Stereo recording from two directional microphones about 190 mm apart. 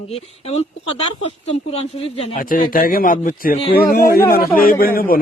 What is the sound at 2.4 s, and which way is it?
A man's voice, 45° left (ahead or behind).